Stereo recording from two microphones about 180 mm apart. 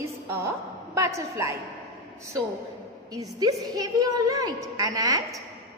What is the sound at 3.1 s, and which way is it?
A woman's voice, 20° right (ahead or behind).